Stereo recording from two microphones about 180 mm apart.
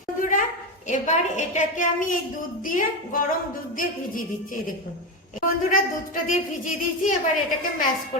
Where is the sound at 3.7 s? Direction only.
50° left (ahead or behind).